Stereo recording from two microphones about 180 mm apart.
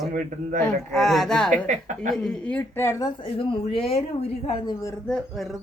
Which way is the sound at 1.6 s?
45° right (ahead or behind).